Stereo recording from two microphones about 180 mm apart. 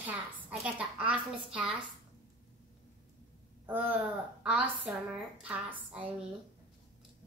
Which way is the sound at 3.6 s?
10° right (ahead or behind).